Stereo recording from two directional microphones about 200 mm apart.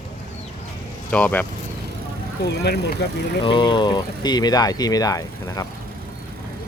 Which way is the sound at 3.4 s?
25° left (ahead or behind).